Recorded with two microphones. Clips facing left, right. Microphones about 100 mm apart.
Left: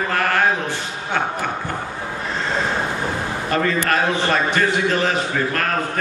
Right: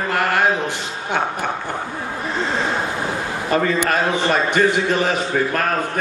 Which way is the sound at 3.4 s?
15° right (ahead or behind).